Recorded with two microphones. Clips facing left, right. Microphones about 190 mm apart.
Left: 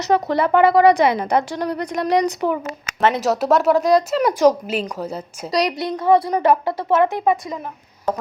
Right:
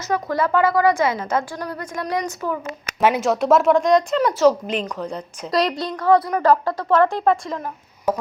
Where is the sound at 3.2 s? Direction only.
Centre (ahead or behind).